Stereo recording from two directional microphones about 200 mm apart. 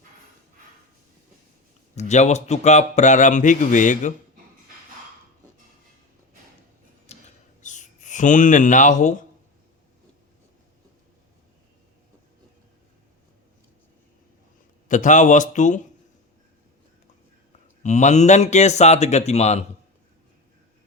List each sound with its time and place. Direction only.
2.0 s a man's voice: 35° left (ahead or behind)
7.1 s a sound: 35° left (ahead or behind)
7.6 s speech: 40° left (ahead or behind)
14.8 s a man's voice: 40° left (ahead or behind)
17.8 s a man's voice: 35° left (ahead or behind)